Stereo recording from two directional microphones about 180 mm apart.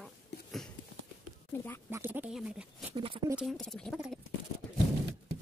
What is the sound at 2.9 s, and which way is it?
Speech, 30° right (ahead or behind).